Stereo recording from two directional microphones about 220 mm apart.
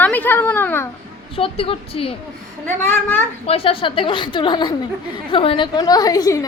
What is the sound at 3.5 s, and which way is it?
A woman's voice, 25° left (ahead or behind).